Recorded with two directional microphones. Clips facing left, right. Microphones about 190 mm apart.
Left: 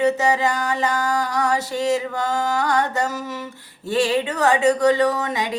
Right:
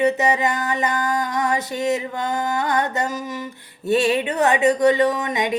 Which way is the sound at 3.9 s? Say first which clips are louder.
Right 1 dB; 20° right (ahead or behind).